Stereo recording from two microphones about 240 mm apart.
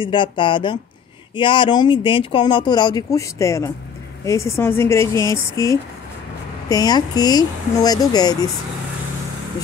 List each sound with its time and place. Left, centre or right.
0.0 s speech: centre